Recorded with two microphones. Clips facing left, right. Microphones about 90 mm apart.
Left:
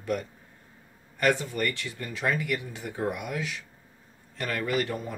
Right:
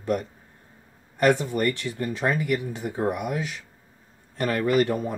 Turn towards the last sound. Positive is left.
turn(degrees=-40)  # may be behind; listen again after turning